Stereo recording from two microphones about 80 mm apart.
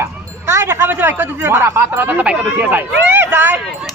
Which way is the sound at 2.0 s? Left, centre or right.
Right.